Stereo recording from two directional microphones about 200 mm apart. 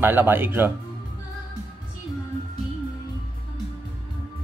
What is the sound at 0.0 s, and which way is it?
Speech, 10° right (ahead or behind).